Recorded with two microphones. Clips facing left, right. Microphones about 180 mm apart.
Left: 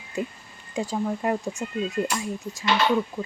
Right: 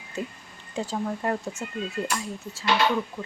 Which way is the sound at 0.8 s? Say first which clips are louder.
Left 2 dB; 10° left (ahead or behind).